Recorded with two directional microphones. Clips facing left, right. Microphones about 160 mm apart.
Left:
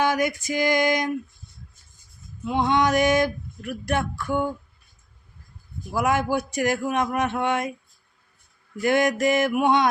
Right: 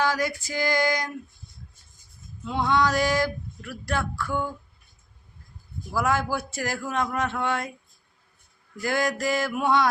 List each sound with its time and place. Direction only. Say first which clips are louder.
0.0 s speech: left 3 dB; 20° left (ahead or behind)
2.4 s speech: left 2 dB; 20° left (ahead or behind)
5.9 s speech: left 3 dB; 20° left (ahead or behind)
8.8 s speech: left 5 dB; 20° left (ahead or behind)